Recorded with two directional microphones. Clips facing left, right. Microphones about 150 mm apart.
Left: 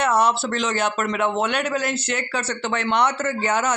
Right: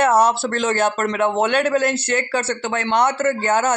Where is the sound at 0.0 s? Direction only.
50° right (ahead or behind).